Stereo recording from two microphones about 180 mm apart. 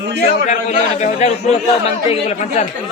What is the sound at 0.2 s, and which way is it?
A man's voice, 40° left (ahead or behind).